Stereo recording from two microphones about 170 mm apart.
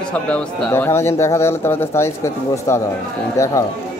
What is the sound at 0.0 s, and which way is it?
Speech, 5° left (ahead or behind).